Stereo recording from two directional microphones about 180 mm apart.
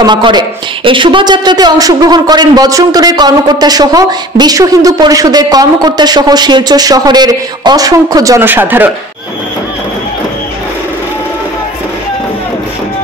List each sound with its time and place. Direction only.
0.0 s a man's voice: 25° right (ahead or behind)